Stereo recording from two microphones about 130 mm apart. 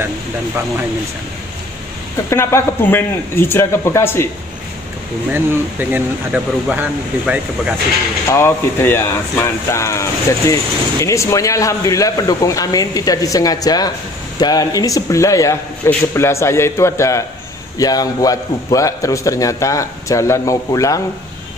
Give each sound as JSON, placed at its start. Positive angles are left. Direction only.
{"t": 2.2, "sound": "speech", "side_deg": 20}
{"t": 5.3, "sound": "speech", "side_deg": -15}
{"t": 8.3, "sound": "speech", "side_deg": 20}